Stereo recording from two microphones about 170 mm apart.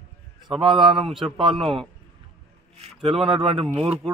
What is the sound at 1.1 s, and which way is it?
Speech, centre (ahead or behind).